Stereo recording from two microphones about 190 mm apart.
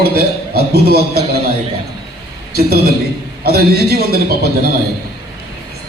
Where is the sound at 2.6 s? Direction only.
55° right (ahead or behind).